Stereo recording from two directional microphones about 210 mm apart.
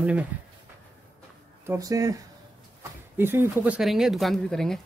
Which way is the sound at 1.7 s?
15° right (ahead or behind).